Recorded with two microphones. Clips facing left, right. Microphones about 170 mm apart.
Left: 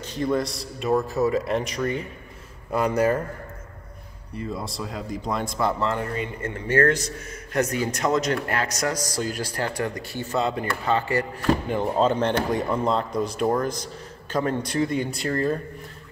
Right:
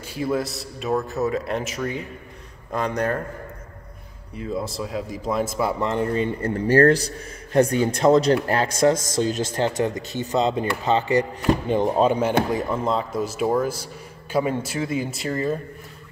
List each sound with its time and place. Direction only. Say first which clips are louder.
0.0 s speech: even; 5° right (ahead or behind)
4.4 s speech: right 3 dB; centre (ahead or behind)
5.9 s a man's voice: right 5 dB; 25° right (ahead or behind); by 15.6 s centre (ahead or behind)